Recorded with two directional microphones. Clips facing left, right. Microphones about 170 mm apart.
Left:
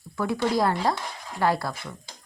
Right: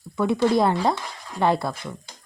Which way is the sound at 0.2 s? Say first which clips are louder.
Right 4 dB; 25° right (ahead or behind).